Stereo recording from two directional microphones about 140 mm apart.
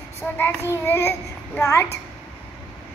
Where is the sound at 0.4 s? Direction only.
15° left (ahead or behind).